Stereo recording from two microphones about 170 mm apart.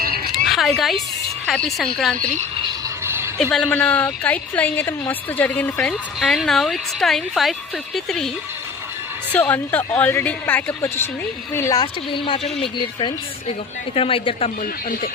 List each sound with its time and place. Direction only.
0.4 s a woman's voice: centre (ahead or behind)
3.0 s a sound: 15° right (ahead or behind)
3.3 s a woman's voice: 5° left (ahead or behind)
9.3 s a woman's voice: 10° left (ahead or behind); by 12.5 s 30° left (ahead or behind)
13.9 s speech: 35° left (ahead or behind)
14.6 s speech: 55° left (ahead or behind)